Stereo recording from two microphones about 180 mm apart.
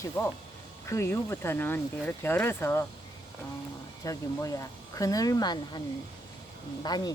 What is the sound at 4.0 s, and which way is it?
Speech, 20° left (ahead or behind).